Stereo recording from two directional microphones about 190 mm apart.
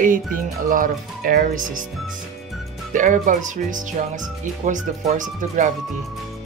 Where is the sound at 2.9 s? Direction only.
45° right (ahead or behind).